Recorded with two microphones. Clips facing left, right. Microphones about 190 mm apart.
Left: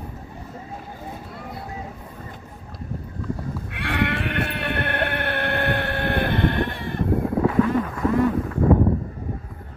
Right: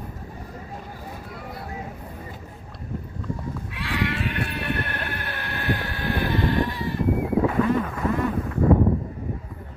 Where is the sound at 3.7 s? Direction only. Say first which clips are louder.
Left 3 dB; 60° left (ahead or behind).